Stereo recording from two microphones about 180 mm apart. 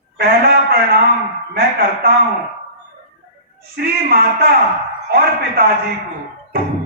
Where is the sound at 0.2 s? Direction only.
60° right (ahead or behind).